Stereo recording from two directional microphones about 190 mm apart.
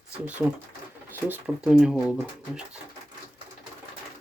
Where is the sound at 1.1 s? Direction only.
5° right (ahead or behind).